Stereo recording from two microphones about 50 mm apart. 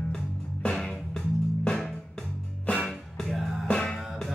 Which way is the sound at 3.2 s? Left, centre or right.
Centre.